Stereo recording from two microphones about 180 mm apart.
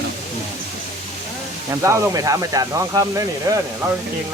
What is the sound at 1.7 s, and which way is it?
Speech, 15° right (ahead or behind).